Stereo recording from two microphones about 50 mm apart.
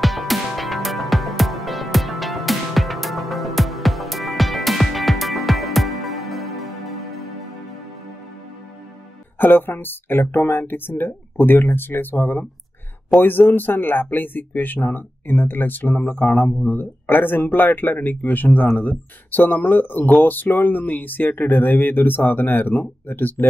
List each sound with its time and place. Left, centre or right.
0.0 s music: centre
9.4 s speech: left